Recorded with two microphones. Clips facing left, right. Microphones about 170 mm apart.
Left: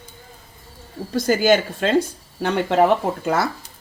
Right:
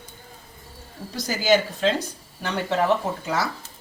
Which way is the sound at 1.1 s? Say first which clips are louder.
Left 4 dB; 55° left (ahead or behind).